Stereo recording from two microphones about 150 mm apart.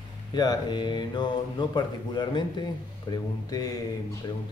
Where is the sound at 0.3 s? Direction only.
30° left (ahead or behind).